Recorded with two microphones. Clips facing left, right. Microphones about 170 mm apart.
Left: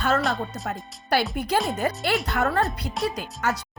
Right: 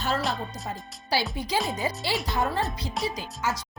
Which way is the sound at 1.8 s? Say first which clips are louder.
Left 4 dB; 55° left (ahead or behind).